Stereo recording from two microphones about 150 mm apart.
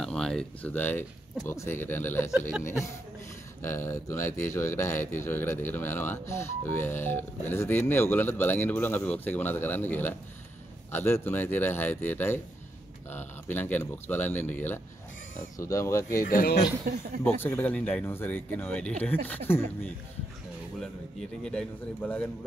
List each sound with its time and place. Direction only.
0.0 s speech: 5° left (ahead or behind)
3.6 s speech: 15° left (ahead or behind)
16.3 s speech: 80° left
16.9 s speech: 90° right
17.2 s a man's voice: 15° left (ahead or behind)